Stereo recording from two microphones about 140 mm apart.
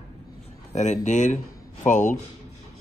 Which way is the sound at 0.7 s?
55° left (ahead or behind).